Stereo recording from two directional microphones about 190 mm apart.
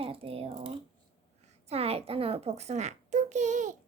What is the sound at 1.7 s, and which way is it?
A child's voice, 30° right (ahead or behind).